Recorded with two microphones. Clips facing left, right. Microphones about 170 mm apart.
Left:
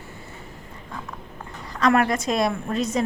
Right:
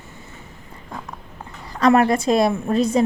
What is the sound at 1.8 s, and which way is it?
A woman's voice, 30° right (ahead or behind).